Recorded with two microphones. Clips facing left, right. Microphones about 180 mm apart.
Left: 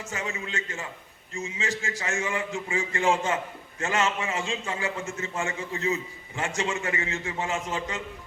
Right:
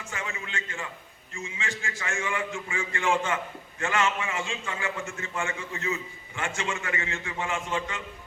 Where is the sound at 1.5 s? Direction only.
40° left (ahead or behind).